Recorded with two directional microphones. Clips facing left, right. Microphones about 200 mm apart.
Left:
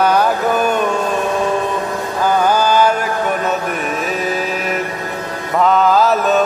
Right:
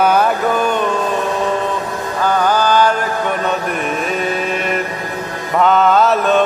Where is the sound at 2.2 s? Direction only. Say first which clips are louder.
Left 1 dB; 10° left (ahead or behind).